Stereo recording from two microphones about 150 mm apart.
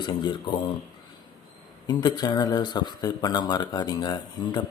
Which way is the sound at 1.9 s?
25° left (ahead or behind).